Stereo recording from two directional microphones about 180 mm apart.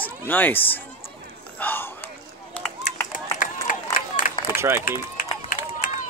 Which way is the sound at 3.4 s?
50° left (ahead or behind).